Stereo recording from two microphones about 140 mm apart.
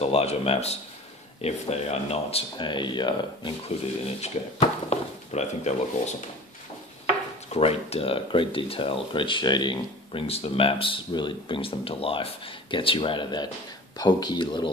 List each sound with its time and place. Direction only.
0.0 s speech: 45° left (ahead or behind)
4.2 s speech: 50° left (ahead or behind)
7.5 s speech: 45° left (ahead or behind)